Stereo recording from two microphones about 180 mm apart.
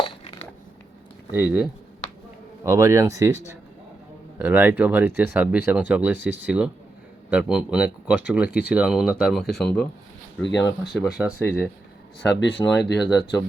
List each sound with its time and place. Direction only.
0.0 s a sound: 30° left (ahead or behind)
1.3 s speech: 10° right (ahead or behind)
4.4 s speech: 10° right (ahead or behind)
10.5 s speech: 20° left (ahead or behind)
10.8 s speech: centre (ahead or behind)
11.3 s speech: 10° left (ahead or behind)
12.4 s speech: 75° left (ahead or behind)
13.0 s speech: centre (ahead or behind)